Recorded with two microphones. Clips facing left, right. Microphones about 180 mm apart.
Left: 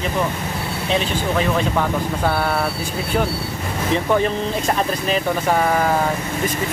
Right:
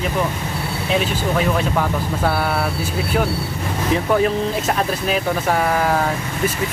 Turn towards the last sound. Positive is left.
turn(degrees=0)  # may be behind; listen again after turning